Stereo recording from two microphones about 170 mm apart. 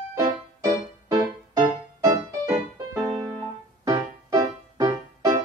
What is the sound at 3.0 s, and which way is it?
Music, 5° left (ahead or behind).